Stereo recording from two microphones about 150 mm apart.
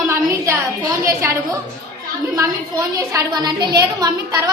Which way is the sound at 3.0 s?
25° right (ahead or behind).